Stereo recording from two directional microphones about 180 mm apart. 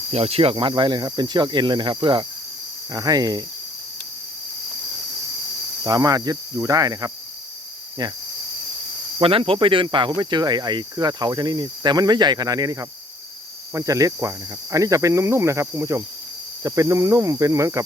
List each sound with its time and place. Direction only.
0.1 s speech: 35° right (ahead or behind)
5.8 s speech: 20° right (ahead or behind)
9.2 s speech: 30° right (ahead or behind)